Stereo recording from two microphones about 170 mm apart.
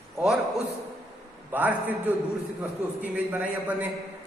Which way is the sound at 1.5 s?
10° right (ahead or behind).